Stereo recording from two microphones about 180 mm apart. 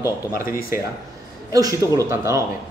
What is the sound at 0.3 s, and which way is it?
Speech, 55° left (ahead or behind).